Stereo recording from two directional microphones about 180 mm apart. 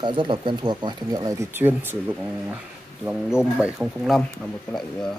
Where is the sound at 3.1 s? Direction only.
5° right (ahead or behind).